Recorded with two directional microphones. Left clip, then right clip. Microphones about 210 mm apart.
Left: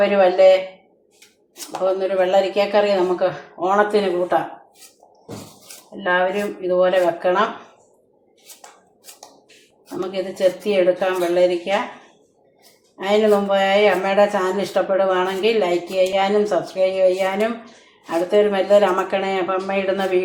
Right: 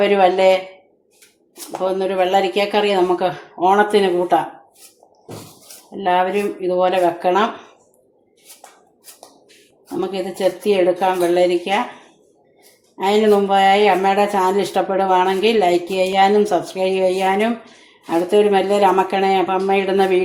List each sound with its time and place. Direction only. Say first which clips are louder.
0.0 s speech: right 1 dB; 35° right (ahead or behind)
2.0 s speech: right 1 dB; 35° right (ahead or behind)
6.0 s speech: right 2 dB; 40° right (ahead or behind)
10.1 s speech: left 2 dB; 35° right (ahead or behind)
13.0 s speech: right 2 dB; 35° right (ahead or behind)